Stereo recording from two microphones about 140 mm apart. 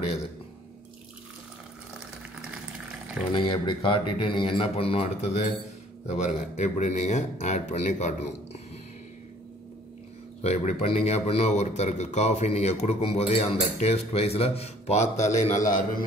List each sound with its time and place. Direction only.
3.3 s speech: 35° left (ahead or behind); by 8.1 s 55° left (ahead or behind)
10.4 s a man's voice: 50° left (ahead or behind)